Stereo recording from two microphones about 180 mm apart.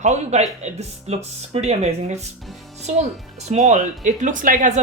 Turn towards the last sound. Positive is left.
turn(degrees=-50)  # may be behind; listen again after turning